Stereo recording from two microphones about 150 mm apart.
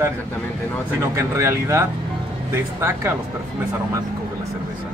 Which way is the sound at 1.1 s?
20° right (ahead or behind).